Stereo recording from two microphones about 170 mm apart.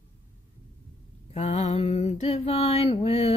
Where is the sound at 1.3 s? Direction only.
40° left (ahead or behind).